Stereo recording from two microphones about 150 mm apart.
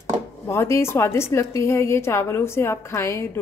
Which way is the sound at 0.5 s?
15° left (ahead or behind).